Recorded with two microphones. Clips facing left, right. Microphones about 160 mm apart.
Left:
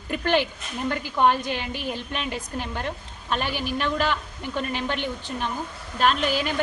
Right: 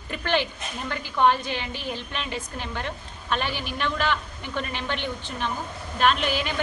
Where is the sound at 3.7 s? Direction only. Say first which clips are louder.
Left 2 dB; 40° left (ahead or behind).